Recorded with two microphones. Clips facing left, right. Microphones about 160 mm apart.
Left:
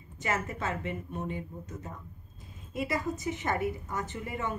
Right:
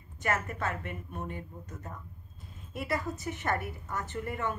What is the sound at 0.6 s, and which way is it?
Speech, 20° left (ahead or behind).